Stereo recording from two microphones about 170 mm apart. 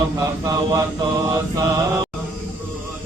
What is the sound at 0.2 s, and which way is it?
Speech, 20° right (ahead or behind).